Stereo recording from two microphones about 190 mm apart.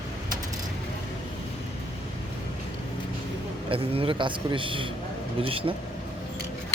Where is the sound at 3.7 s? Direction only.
30° right (ahead or behind).